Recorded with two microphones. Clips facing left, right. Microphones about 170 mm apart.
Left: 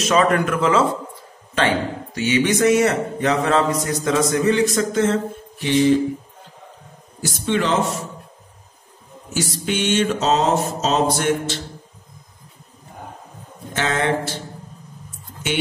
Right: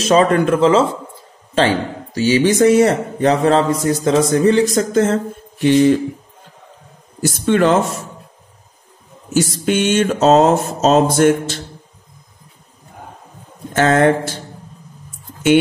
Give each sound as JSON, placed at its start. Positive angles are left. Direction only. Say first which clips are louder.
{"t": 0.0, "sound": "a man's voice", "louder": "right 4 dB", "side_deg": -30}
{"t": 2.1, "sound": "a man's voice", "louder": "right 5 dB", "side_deg": -35}
{"t": 7.2, "sound": "mantra", "louder": "right 7 dB", "side_deg": -50}
{"t": 9.3, "sound": "mantra", "louder": "right 7 dB", "side_deg": -45}
{"t": 13.7, "sound": "mantra", "louder": "right 8 dB", "side_deg": -45}